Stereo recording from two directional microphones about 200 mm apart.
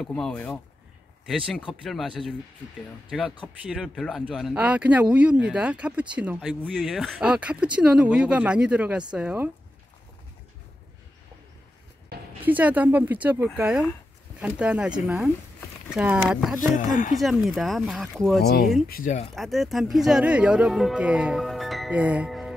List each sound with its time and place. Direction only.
0.0 s speech: 5° left (ahead or behind)
12.1 s a sound: 55° right (ahead or behind)
12.4 s speech: 10° right (ahead or behind)
16.7 s speech: 40° left (ahead or behind)
17.2 s speech: centre (ahead or behind)
18.9 s speech: 40° left (ahead or behind)
19.3 s speech: centre (ahead or behind)